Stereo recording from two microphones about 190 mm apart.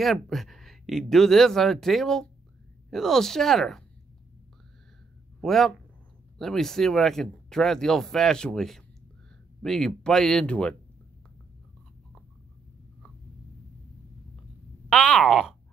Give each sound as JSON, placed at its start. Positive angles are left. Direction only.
{"t": 0.0, "sound": "speech", "side_deg": 0}
{"t": 5.4, "sound": "speech", "side_deg": 0}
{"t": 14.9, "sound": "a sound", "side_deg": 5}